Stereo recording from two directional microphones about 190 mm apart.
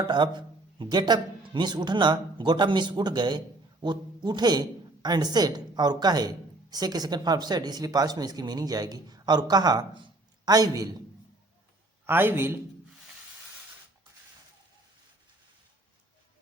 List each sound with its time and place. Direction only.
0.0 s a man's voice: 25° right (ahead or behind)
12.0 s a man's voice: 10° right (ahead or behind)